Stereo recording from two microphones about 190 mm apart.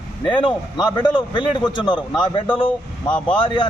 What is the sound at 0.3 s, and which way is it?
A man's voice, 25° left (ahead or behind).